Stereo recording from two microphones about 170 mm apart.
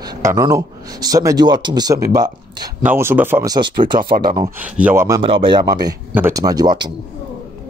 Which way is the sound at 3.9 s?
60° right (ahead or behind).